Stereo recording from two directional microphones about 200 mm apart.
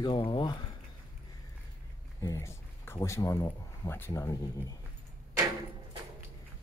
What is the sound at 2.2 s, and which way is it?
A man's voice, 15° left (ahead or behind).